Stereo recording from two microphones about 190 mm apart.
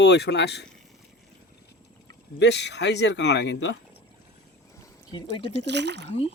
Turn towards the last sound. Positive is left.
turn(degrees=-65)  # may be behind; listen again after turning